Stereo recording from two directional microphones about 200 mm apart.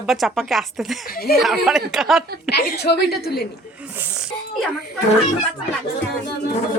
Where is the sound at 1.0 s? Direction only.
50° left (ahead or behind).